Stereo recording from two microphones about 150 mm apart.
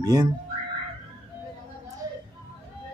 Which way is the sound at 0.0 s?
20° right (ahead or behind).